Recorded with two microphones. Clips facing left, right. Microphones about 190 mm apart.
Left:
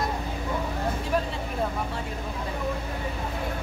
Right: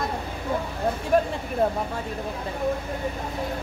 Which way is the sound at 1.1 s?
50° right (ahead or behind).